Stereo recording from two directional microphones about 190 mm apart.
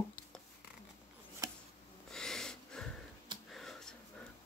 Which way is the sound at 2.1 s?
5° left (ahead or behind).